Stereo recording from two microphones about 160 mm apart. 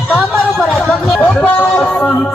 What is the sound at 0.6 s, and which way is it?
Music, 5° left (ahead or behind).